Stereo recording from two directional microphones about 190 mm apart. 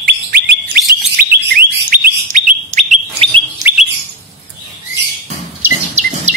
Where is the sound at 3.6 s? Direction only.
10° right (ahead or behind).